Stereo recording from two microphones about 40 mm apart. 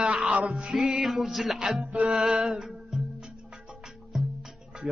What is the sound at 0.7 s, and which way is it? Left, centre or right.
Music, centre.